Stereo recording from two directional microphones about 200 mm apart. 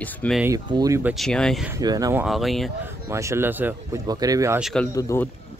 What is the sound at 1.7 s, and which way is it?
Speech, 15° right (ahead or behind).